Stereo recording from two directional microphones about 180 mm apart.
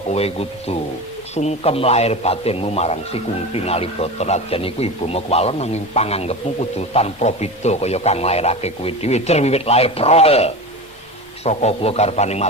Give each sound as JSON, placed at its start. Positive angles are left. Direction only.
{"t": 0.1, "sound": "a man's voice", "side_deg": 35}